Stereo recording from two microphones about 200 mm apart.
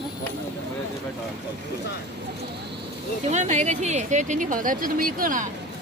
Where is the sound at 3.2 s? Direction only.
35° right (ahead or behind).